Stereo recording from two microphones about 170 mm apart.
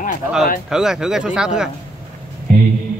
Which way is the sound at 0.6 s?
5° right (ahead or behind).